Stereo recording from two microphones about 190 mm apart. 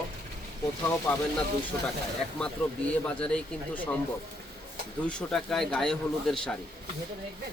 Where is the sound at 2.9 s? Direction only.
5° left (ahead or behind).